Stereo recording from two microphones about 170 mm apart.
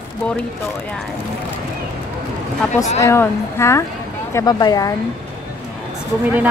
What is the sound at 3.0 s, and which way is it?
A woman's voice, 15° left (ahead or behind).